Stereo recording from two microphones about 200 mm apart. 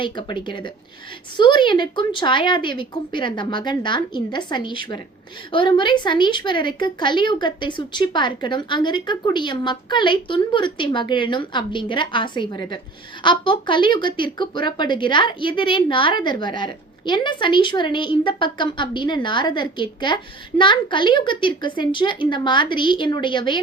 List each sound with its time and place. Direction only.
0.0 s a woman's voice: 25° left (ahead or behind)